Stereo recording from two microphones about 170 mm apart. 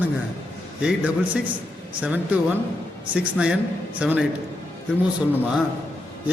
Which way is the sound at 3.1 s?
5° right (ahead or behind).